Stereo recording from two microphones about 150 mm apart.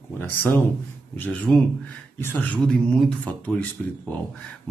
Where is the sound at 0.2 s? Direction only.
10° left (ahead or behind).